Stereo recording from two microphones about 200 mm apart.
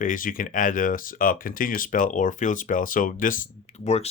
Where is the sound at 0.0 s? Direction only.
40° left (ahead or behind).